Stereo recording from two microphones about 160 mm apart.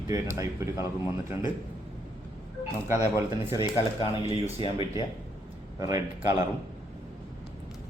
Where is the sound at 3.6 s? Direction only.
35° left (ahead or behind).